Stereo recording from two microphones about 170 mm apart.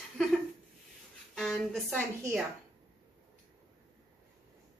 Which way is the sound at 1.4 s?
Centre (ahead or behind).